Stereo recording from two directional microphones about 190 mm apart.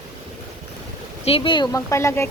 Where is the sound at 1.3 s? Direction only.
25° left (ahead or behind).